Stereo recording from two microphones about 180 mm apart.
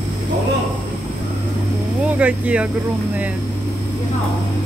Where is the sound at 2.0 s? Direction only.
10° right (ahead or behind).